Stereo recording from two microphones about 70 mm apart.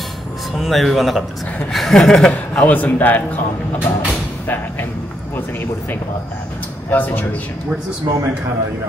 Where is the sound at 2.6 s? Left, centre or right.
Left.